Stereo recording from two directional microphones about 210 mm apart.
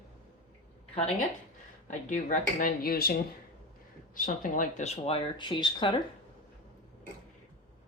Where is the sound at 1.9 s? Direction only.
35° left (ahead or behind); by 6.0 s 20° left (ahead or behind).